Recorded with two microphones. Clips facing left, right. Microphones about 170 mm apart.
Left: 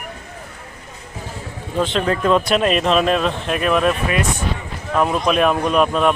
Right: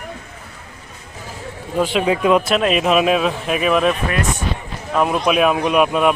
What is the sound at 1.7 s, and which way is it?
Speech, 10° right (ahead or behind).